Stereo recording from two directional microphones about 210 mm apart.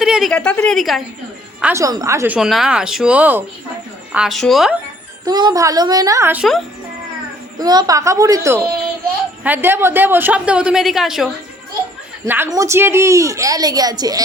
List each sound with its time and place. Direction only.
0.0 s a woman's voice: centre (ahead or behind)
1.6 s a woman's voice: 15° right (ahead or behind)
5.2 s speech: 20° right (ahead or behind)
7.6 s speech: 20° right (ahead or behind); by 11.3 s centre (ahead or behind)
12.2 s speech: 10° right (ahead or behind)